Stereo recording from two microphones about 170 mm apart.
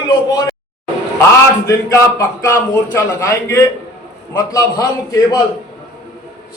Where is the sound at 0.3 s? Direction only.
20° left (ahead or behind).